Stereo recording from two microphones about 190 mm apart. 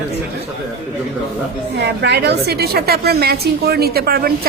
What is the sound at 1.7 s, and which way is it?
A woman's voice, 65° right (ahead or behind).